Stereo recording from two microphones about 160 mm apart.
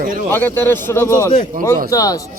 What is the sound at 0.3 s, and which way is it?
A man's voice, 10° left (ahead or behind).